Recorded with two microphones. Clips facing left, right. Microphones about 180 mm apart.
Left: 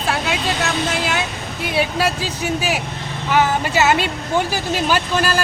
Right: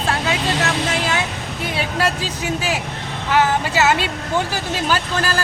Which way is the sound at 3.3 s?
15° left (ahead or behind).